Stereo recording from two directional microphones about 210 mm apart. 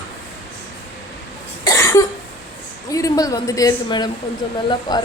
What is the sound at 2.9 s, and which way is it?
A woman's voice, 15° left (ahead or behind).